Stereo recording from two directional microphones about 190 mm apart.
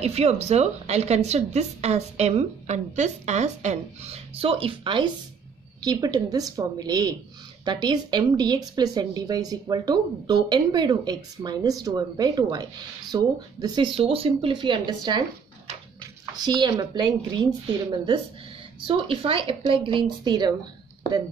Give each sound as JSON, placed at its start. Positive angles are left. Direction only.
{"t": 0.0, "sound": "a woman's voice", "side_deg": -35}
{"t": 16.0, "sound": "a woman's voice", "side_deg": -20}